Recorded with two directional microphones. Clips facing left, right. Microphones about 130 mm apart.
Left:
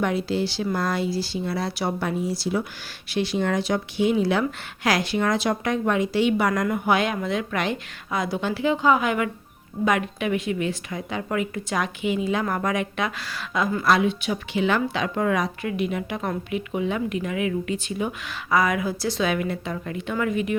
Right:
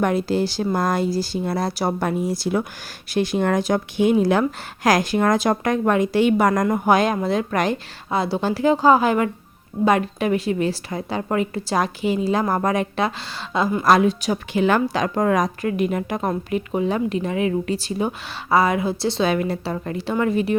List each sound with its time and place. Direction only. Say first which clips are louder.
0.0 s speech: right 4 dB; 45° right (ahead or behind); by 13.8 s 30° right (ahead or behind)
13.8 s speech: right 5 dB; 40° right (ahead or behind)